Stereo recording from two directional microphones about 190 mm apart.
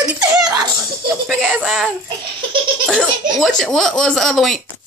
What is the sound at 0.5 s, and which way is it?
Laughter, 20° right (ahead or behind).